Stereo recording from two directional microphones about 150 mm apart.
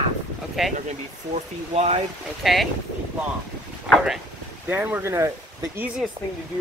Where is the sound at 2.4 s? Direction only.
Centre (ahead or behind).